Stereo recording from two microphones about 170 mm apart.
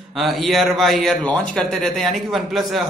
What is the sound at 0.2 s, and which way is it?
A man's voice, centre (ahead or behind).